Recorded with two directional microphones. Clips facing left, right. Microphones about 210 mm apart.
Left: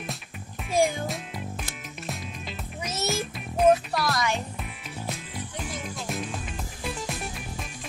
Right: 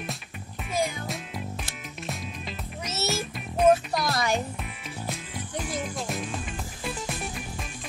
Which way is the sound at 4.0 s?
30° right (ahead or behind).